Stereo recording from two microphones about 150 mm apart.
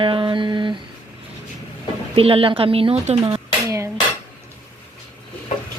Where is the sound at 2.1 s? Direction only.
40° right (ahead or behind).